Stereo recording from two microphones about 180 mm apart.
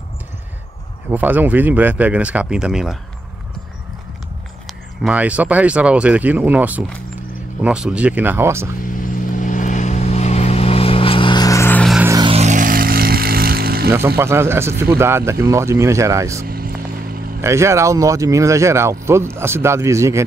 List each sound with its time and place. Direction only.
1.1 s speech: 10° right (ahead or behind)
4.6 s speech: 5° right (ahead or behind)
9.0 s vehicle: 45° left (ahead or behind); by 11.8 s 15° left (ahead or behind)
12.0 s music: 15° right (ahead or behind)
12.3 s vehicle: 40° right (ahead or behind); by 13.9 s 55° right (ahead or behind)
13.9 s speech: 15° right (ahead or behind)
16.4 s vehicle: 55° right (ahead or behind)
17.4 s speech: 15° right (ahead or behind)